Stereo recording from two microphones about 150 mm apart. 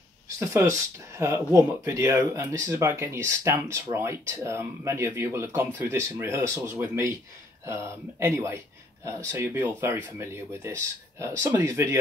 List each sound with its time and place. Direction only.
0.4 s speech: 20° right (ahead or behind)